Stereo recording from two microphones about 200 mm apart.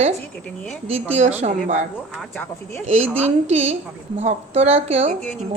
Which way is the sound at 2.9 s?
35° right (ahead or behind).